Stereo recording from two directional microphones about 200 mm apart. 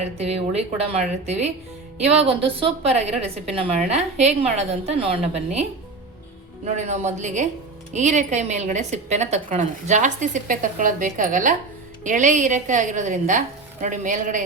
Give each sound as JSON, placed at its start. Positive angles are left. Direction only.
{"t": 0.0, "sound": "a woman's voice", "side_deg": -30}
{"t": 6.7, "sound": "a woman's voice", "side_deg": -35}